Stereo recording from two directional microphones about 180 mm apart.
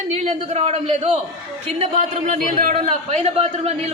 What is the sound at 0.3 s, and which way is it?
A man's voice, 35° right (ahead or behind).